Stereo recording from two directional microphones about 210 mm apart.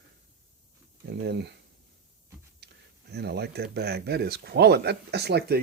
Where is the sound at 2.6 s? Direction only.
55° right (ahead or behind).